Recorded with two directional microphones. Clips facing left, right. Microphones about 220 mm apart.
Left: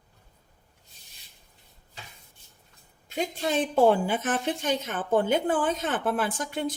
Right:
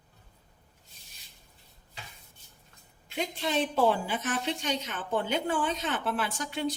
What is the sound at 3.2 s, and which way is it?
A woman's voice, 45° left (ahead or behind).